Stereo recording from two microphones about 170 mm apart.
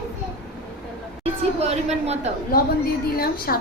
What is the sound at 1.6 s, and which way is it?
Speech, 40° right (ahead or behind).